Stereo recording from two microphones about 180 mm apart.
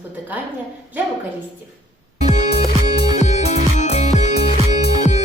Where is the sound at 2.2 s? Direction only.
40° left (ahead or behind).